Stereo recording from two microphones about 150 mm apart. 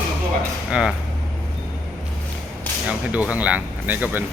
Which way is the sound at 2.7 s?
10° left (ahead or behind).